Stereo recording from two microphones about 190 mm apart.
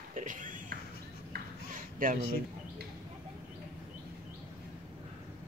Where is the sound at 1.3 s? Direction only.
55° right (ahead or behind).